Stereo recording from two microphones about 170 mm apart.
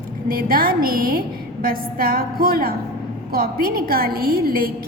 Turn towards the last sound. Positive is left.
turn(degrees=-60)  # may be behind; listen again after turning